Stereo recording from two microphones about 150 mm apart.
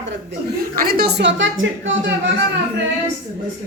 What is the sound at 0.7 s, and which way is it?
Speech, 85° right.